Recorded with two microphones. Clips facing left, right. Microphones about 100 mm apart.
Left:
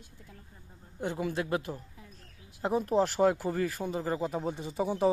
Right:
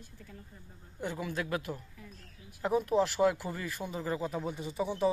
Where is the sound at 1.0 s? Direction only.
30° left (ahead or behind).